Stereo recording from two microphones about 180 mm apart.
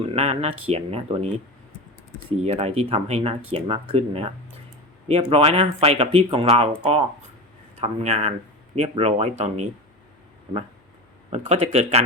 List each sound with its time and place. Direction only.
0.1 s speech: 35° right (ahead or behind)
2.4 s speech: 35° right (ahead or behind)
11.3 s speech: 35° right (ahead or behind)